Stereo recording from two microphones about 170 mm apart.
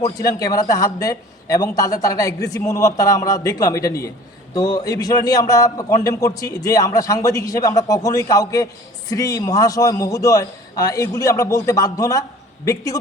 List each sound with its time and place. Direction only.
0.0 s a man's voice: 20° left (ahead or behind)